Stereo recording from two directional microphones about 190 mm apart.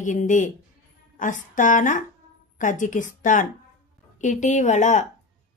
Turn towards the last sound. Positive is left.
turn(degrees=40)  # may be behind; listen again after turning